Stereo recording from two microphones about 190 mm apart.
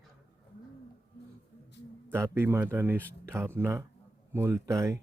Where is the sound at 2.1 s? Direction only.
15° right (ahead or behind).